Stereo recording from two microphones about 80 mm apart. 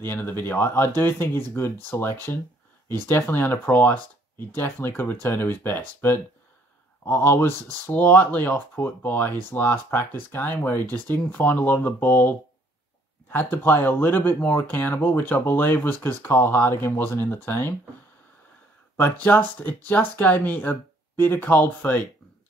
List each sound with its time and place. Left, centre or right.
0.0 s speech: left
19.2 s speech: left